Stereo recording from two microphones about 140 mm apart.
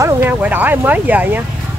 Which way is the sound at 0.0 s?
15° right (ahead or behind).